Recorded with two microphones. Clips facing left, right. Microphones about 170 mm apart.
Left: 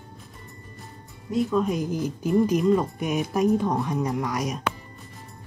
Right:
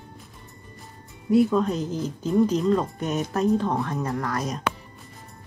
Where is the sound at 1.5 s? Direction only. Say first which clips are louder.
Even; 10° left (ahead or behind).